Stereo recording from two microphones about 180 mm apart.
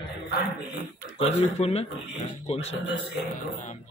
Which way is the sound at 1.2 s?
35° left (ahead or behind).